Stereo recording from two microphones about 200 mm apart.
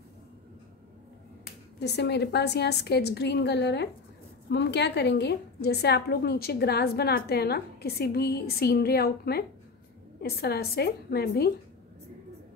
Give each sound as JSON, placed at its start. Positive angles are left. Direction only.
{"t": 1.4, "sound": "a woman's voice", "side_deg": 55}